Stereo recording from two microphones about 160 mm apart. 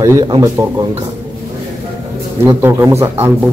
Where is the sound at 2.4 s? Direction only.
15° right (ahead or behind).